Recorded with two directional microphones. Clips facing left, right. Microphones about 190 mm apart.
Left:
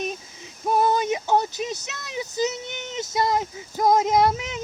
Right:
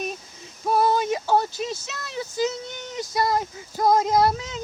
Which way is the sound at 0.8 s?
20° left (ahead or behind).